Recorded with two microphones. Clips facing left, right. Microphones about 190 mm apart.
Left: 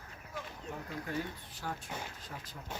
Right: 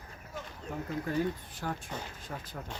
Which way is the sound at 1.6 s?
55° right (ahead or behind).